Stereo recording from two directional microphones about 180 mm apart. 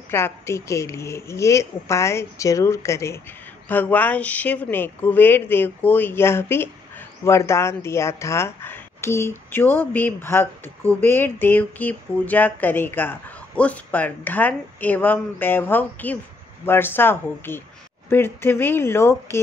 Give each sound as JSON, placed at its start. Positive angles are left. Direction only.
{"t": 0.1, "sound": "speech", "side_deg": 15}